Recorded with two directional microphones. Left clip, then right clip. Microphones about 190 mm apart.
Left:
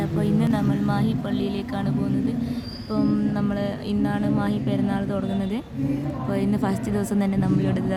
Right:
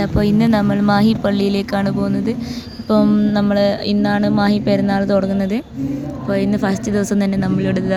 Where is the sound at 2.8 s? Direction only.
45° right (ahead or behind).